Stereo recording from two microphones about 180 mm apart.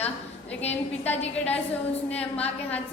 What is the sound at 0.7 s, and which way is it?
Speech, 10° left (ahead or behind).